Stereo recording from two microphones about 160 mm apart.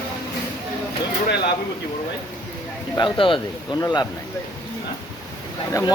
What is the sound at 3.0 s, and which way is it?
Speech, 30° left (ahead or behind).